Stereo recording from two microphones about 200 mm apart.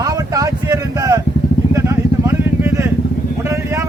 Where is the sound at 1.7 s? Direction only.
15° right (ahead or behind).